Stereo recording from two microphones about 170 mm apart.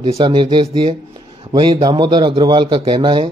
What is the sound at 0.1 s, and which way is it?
A man's voice, 30° right (ahead or behind).